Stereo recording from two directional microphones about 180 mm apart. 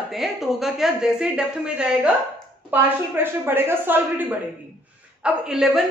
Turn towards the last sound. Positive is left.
turn(degrees=-5)  # may be behind; listen again after turning